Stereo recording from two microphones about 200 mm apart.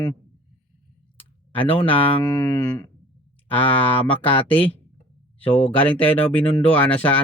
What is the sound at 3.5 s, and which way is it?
Speech, 10° left (ahead or behind).